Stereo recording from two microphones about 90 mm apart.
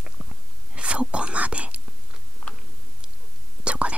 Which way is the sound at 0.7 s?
15° right (ahead or behind).